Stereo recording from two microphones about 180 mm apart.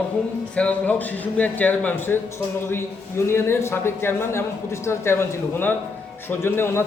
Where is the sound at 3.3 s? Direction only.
15° left (ahead or behind).